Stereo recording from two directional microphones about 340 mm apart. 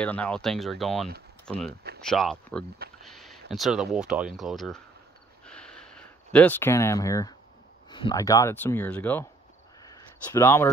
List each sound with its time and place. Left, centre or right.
0.0 s speech: centre
1.7 s speech: right
2.0 s speech: centre
5.4 s a sound: centre
7.9 s speech: centre
9.8 s a sound: centre